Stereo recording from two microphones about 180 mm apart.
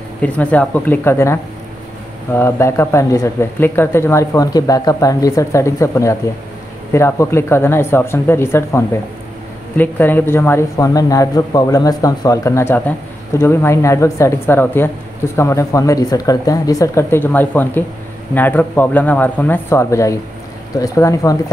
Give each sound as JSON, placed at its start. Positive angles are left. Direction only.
{"t": 0.2, "sound": "speech", "side_deg": 10}